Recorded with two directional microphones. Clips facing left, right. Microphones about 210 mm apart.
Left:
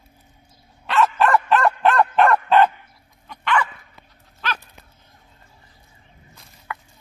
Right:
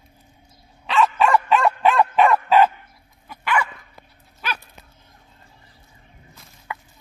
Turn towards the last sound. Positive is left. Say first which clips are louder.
# even
turn(degrees=-20)  # may be behind; listen again after turning